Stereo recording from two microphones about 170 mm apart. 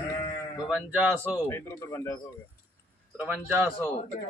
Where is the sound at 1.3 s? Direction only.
15° left (ahead or behind).